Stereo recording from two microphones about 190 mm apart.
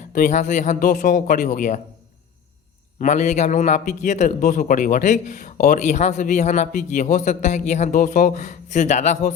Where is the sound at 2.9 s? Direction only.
40° left (ahead or behind).